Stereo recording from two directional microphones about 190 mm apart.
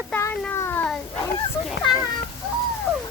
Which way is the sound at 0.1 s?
10° left (ahead or behind).